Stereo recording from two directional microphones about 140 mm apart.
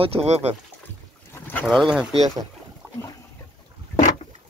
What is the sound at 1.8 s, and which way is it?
Speech, centre (ahead or behind).